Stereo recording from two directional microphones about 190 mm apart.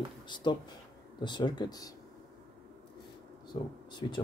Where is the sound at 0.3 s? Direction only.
25° left (ahead or behind).